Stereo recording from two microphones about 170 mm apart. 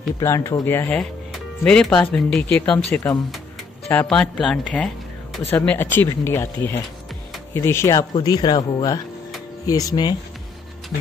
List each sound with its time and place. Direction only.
0.2 s speech: 15° left (ahead or behind)